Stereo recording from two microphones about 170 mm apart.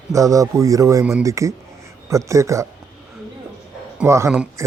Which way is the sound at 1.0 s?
5° right (ahead or behind).